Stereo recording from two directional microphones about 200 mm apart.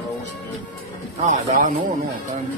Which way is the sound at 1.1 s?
40° right (ahead or behind).